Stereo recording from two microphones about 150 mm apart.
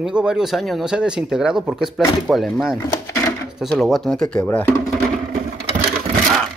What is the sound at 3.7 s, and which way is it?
Speech, centre (ahead or behind).